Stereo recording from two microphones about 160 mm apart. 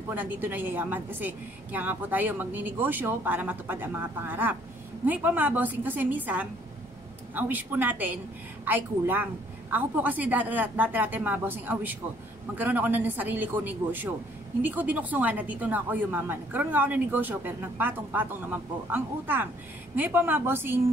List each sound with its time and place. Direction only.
0.1 s a woman's voice: 10° right (ahead or behind)